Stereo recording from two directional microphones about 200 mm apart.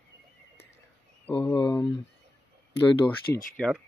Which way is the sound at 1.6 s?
20° left (ahead or behind).